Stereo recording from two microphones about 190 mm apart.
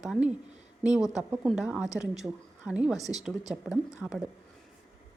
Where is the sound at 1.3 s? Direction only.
5° right (ahead or behind).